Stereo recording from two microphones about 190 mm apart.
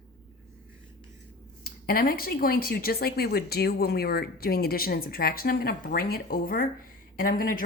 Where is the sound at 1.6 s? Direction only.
50° left (ahead or behind).